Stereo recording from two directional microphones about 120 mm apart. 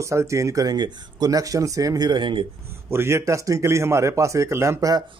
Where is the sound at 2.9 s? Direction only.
20° right (ahead or behind).